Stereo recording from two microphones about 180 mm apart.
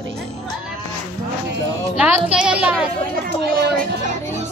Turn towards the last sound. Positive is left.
turn(degrees=-60)  # may be behind; listen again after turning